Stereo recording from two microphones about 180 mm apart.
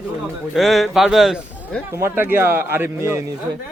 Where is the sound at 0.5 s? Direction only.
Centre (ahead or behind).